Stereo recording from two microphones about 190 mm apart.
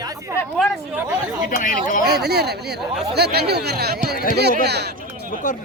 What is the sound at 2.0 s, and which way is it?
Speech, 60° right (ahead or behind).